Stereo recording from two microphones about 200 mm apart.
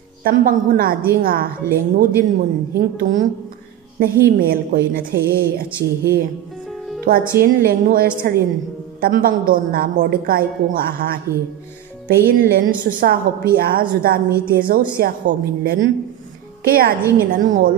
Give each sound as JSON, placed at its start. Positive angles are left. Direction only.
{"t": 0.2, "sound": "a woman's voice", "side_deg": -45}